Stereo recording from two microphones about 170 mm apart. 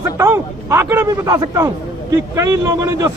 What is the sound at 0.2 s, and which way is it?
A man's voice, 15° right (ahead or behind).